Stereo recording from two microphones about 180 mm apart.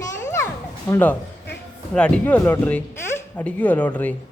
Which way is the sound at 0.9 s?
10° left (ahead or behind).